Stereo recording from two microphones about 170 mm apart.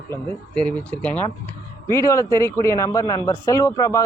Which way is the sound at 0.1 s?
10° left (ahead or behind).